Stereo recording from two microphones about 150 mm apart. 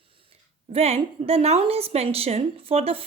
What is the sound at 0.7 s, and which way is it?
A woman's voice, 45° right (ahead or behind).